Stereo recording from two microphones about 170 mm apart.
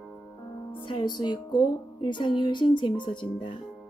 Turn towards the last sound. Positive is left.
turn(degrees=30)  # may be behind; listen again after turning